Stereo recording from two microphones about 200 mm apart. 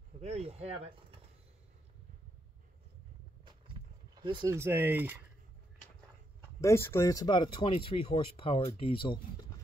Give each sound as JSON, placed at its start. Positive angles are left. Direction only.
{"t": 0.2, "sound": "speech", "side_deg": -30}
{"t": 4.1, "sound": "speech", "side_deg": -25}
{"t": 6.6, "sound": "speech", "side_deg": 15}